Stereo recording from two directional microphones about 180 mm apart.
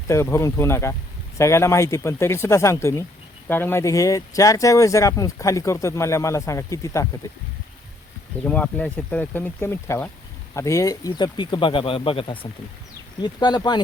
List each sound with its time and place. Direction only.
0.1 s speech: 15° left (ahead or behind)
8.4 s speech: 10° left (ahead or behind); by 13.8 s 25° left (ahead or behind)